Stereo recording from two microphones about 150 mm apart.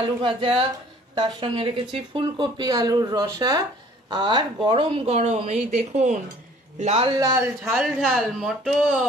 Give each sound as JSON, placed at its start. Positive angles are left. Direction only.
{"t": 0.0, "sound": "a woman's voice", "side_deg": -35}
{"t": 7.2, "sound": "speech", "side_deg": -25}
{"t": 7.7, "sound": "speech", "side_deg": 0}